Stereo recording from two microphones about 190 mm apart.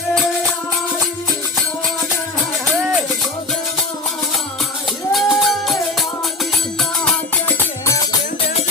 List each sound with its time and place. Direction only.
2.7 s music: 5° right (ahead or behind)
5.1 s music: centre (ahead or behind)